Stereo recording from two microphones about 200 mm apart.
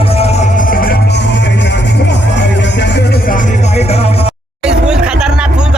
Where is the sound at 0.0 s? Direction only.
30° left (ahead or behind).